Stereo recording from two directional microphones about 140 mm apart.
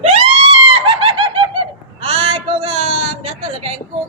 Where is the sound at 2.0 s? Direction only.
35° right (ahead or behind).